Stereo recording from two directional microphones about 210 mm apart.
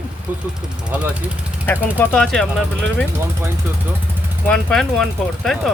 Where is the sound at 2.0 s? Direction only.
5° left (ahead or behind).